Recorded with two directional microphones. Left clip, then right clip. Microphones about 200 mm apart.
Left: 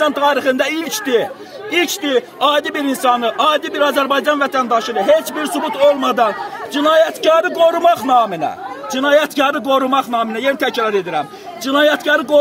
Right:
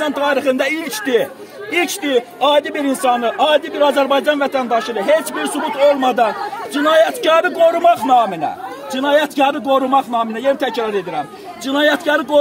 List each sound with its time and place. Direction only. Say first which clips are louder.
0.0 s a man's voice: left 2 dB; 5° left (ahead or behind); by 12.4 s 20° left (ahead or behind)